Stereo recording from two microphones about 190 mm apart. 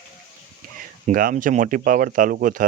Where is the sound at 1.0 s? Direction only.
40° right (ahead or behind).